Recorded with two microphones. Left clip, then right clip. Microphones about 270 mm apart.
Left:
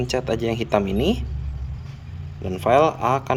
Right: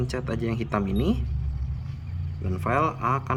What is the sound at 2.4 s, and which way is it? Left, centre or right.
Speech, centre.